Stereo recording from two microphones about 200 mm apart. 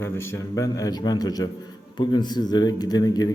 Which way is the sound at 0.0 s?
15° left (ahead or behind).